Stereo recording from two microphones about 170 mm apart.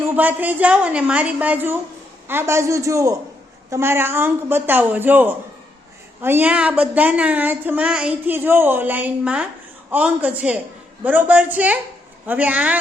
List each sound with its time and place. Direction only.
0.0 s speech: 10° right (ahead or behind)